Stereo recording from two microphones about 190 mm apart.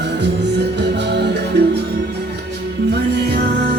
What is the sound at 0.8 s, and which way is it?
Music, 65° right (ahead or behind).